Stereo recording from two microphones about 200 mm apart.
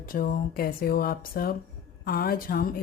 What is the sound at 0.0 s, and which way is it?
Speech, 45° left (ahead or behind).